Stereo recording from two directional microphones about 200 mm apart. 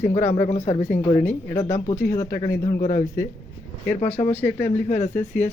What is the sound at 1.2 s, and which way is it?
Speech, 10° left (ahead or behind).